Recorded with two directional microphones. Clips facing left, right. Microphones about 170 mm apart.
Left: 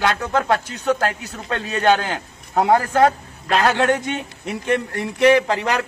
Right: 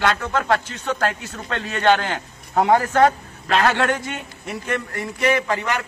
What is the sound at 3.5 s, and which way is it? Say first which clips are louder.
Speech: left 1 dB; 20° left (ahead or behind).